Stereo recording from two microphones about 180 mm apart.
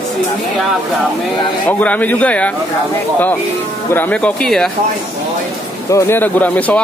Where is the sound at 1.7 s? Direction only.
10° left (ahead or behind).